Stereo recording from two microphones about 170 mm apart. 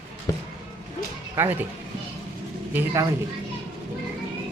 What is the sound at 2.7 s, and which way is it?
Speech, 20° right (ahead or behind).